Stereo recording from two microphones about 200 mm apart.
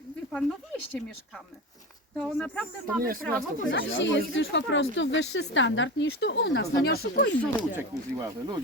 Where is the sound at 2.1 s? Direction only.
5° left (ahead or behind).